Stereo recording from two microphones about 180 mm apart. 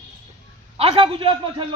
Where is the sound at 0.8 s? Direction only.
30° right (ahead or behind).